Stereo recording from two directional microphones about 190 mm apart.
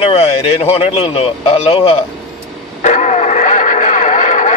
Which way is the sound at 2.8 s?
40° left (ahead or behind).